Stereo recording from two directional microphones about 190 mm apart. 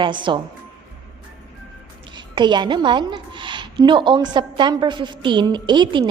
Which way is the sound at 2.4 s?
25° right (ahead or behind).